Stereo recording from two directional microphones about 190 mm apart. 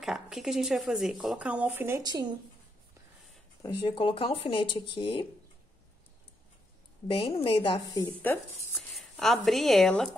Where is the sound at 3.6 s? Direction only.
25° left (ahead or behind).